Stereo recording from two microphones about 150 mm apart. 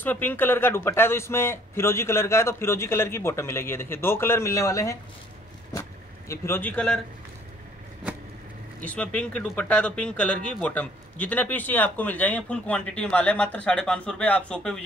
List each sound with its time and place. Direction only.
0.0 s speech: 10° left (ahead or behind)
5.7 s vehicle: 20° left (ahead or behind)
8.8 s speech: 10° left (ahead or behind)